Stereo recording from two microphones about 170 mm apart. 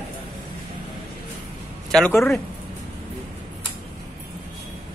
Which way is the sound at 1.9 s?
5° left (ahead or behind).